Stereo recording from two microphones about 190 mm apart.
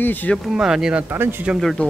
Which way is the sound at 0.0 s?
10° left (ahead or behind).